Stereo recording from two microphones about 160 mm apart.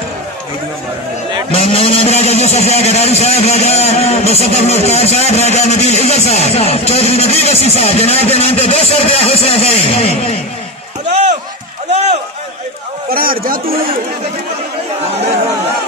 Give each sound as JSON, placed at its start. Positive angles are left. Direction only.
{"t": 1.5, "sound": "a man's voice", "side_deg": 35}
{"t": 11.1, "sound": "run", "side_deg": -45}
{"t": 13.1, "sound": "a man's voice", "side_deg": -65}